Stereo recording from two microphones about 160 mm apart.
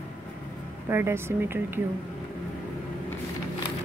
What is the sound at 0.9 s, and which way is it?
Speech, 15° right (ahead or behind).